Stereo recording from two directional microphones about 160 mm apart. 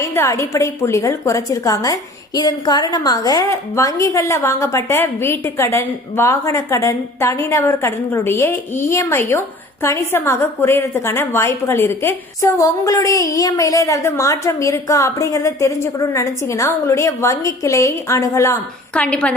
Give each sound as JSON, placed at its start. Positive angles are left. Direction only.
{"t": 0.0, "sound": "a woman's voice", "side_deg": 20}
{"t": 18.9, "sound": "a woman's voice", "side_deg": 5}